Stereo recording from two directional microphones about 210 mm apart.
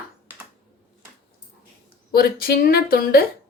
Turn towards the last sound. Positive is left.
turn(degrees=45)  # may be behind; listen again after turning